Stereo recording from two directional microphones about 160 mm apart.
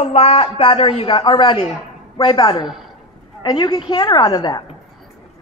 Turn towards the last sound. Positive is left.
turn(degrees=25)  # may be behind; listen again after turning